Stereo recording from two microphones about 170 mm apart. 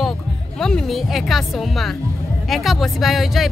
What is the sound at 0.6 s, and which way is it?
Speech, 5° left (ahead or behind).